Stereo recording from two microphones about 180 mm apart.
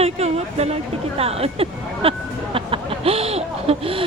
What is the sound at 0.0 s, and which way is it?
Speech, 35° right (ahead or behind).